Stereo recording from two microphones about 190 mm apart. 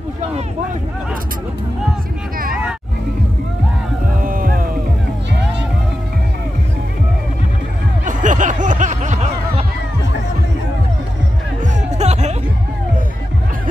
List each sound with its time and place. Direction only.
4.2 s music: 50° right (ahead or behind)
8.0 s a sound: 40° right (ahead or behind)
11.6 s music: 35° right (ahead or behind)